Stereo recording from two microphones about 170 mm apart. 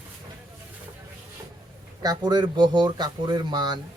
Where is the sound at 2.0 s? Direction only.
25° right (ahead or behind).